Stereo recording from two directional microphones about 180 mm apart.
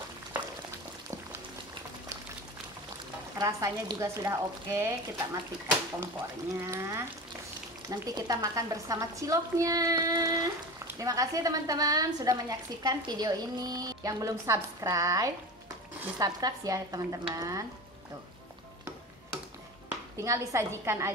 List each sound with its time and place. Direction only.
3.3 s speech: 20° right (ahead or behind)
6.5 s a woman's voice: 15° right (ahead or behind)
20.2 s speech: 15° right (ahead or behind)